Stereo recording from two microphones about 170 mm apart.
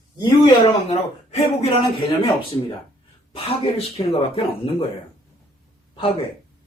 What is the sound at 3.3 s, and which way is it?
Speech, 35° left (ahead or behind).